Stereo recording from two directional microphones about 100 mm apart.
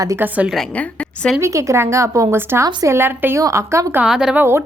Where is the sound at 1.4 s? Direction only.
30° right (ahead or behind).